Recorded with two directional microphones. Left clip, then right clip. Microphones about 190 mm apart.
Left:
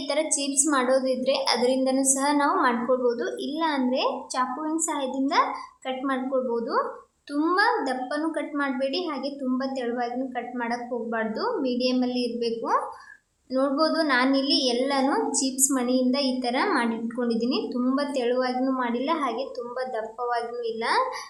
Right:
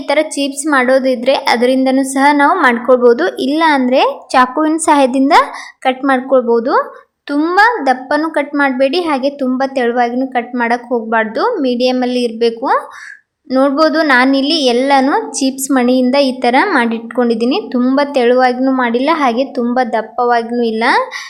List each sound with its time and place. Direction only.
0.1 s a woman's voice: 30° right (ahead or behind)